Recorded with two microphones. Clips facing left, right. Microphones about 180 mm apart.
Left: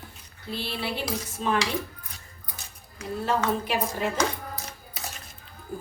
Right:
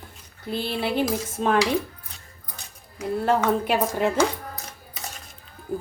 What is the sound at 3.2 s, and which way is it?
Speech, 60° right (ahead or behind).